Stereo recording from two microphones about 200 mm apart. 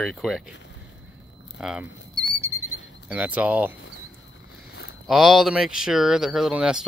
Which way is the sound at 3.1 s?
5° right (ahead or behind).